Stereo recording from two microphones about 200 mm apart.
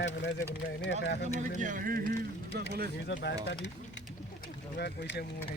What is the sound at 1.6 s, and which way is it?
Speech, 40° right (ahead or behind).